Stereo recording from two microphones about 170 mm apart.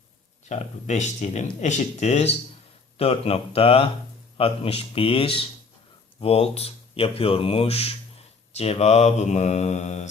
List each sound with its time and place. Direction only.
0.4 s speech: 45° left (ahead or behind)